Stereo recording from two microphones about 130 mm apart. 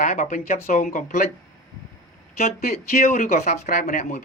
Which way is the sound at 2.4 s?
60° left (ahead or behind).